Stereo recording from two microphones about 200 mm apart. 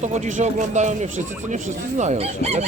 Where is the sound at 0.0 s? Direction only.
35° right (ahead or behind).